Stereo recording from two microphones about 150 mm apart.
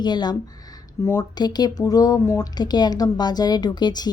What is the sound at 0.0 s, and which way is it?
A woman's voice, 30° left (ahead or behind).